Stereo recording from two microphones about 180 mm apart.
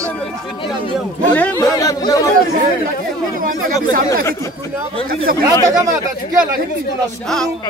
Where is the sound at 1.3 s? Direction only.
10° left (ahead or behind).